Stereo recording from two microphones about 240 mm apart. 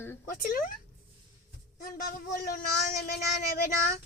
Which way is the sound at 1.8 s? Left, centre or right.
Left.